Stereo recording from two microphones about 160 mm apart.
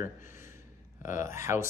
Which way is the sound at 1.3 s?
15° right (ahead or behind).